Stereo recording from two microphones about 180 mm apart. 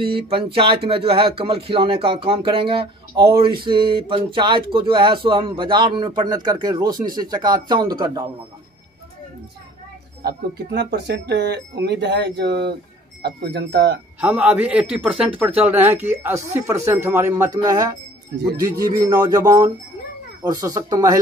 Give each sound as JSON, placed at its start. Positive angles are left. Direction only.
{"t": 0.0, "sound": "speech", "side_deg": -30}
{"t": 10.2, "sound": "speech", "side_deg": -70}
{"t": 14.2, "sound": "speech", "side_deg": -10}